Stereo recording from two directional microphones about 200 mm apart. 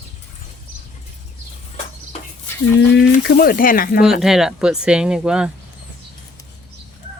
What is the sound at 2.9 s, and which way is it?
Speech, 55° left (ahead or behind).